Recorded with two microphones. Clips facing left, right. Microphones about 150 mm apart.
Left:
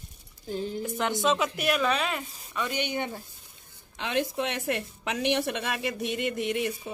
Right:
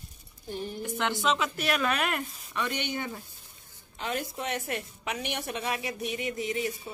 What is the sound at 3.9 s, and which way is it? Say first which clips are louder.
A woman's voice: left 5 dB; 90° left.